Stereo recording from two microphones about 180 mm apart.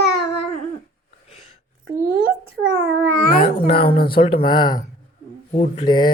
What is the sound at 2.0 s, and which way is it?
Babbling, 55° right (ahead or behind).